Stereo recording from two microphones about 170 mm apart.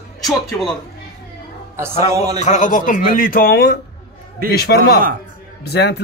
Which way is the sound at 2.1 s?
20° right (ahead or behind).